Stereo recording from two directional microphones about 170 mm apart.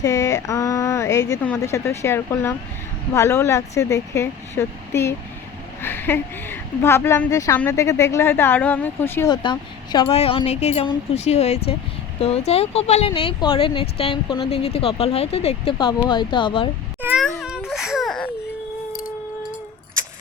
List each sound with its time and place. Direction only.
0.0 s a sound: 20° left (ahead or behind)
1.3 s a woman's voice: 10° left (ahead or behind)
5.8 s a woman's voice: 10° left (ahead or behind)
9.3 s speech: 25° left (ahead or behind)
17.0 s a sound: 10° right (ahead or behind)
17.7 s baby cry: centre (ahead or behind)